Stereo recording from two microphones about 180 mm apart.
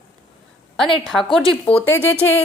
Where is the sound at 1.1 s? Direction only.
Centre (ahead or behind).